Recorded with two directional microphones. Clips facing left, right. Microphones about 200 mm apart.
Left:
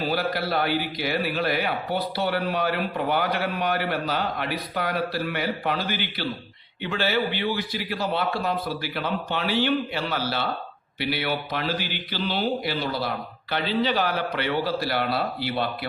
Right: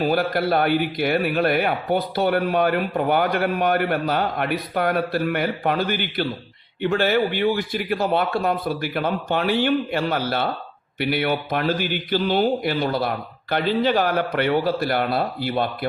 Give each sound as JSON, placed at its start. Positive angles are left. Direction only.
{"t": 0.0, "sound": "a man's voice", "side_deg": -50}